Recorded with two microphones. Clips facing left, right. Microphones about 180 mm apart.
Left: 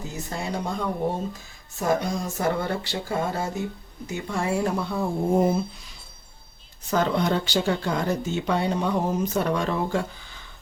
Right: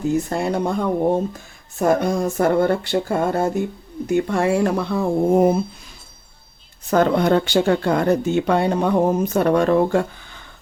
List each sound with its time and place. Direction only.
0.1 s speech: 55° right (ahead or behind)
1.8 s speech: 55° right (ahead or behind); by 5.5 s 80° right
6.9 s speech: 55° right (ahead or behind)